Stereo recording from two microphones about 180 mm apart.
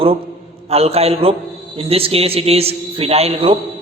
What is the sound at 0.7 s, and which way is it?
A man's voice, 35° right (ahead or behind).